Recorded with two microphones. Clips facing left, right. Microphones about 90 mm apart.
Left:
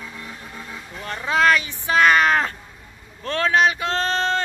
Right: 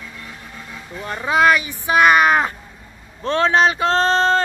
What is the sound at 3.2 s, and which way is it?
Speech, 25° right (ahead or behind).